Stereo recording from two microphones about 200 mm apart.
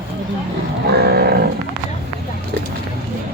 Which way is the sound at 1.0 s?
55° right (ahead or behind).